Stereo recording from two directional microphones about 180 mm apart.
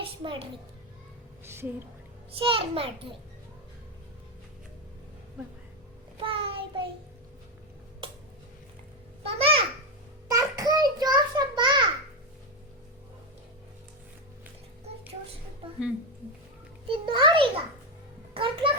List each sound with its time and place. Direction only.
0.0 s music: 30° right (ahead or behind)
1.5 s speech: 15° right (ahead or behind)
2.4 s a child's voice: 30° right (ahead or behind)
6.1 s child singing: 30° right (ahead or behind)
9.2 s a child's voice: 30° right (ahead or behind)
10.2 s a sound: 20° right (ahead or behind)
16.9 s a sound: 25° right (ahead or behind)
18.3 s music: 30° right (ahead or behind)